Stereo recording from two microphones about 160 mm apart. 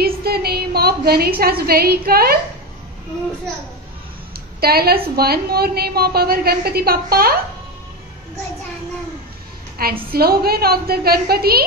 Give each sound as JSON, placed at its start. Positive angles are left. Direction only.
{"t": 0.0, "sound": "a woman's voice", "side_deg": -75}
{"t": 4.6, "sound": "a woman's voice", "side_deg": -75}
{"t": 9.8, "sound": "a woman's voice", "side_deg": -65}